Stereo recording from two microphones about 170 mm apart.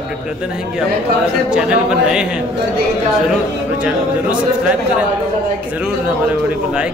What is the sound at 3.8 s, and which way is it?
Speech, 5° right (ahead or behind).